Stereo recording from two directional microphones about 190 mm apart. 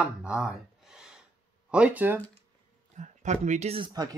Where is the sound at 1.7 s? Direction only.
5° right (ahead or behind).